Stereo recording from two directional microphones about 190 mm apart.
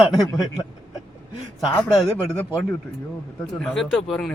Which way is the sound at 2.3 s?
10° left (ahead or behind).